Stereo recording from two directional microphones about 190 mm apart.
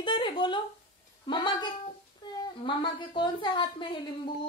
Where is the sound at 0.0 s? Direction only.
25° left (ahead or behind).